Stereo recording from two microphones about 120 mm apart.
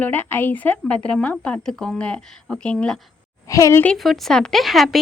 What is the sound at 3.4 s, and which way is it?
Speech, 25° left (ahead or behind).